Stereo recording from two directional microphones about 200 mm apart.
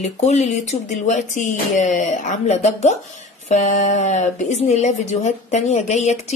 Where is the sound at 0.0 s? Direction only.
35° left (ahead or behind).